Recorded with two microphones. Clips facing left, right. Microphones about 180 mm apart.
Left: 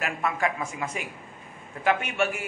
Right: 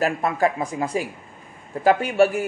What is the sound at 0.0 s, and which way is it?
A man's voice, 35° right (ahead or behind).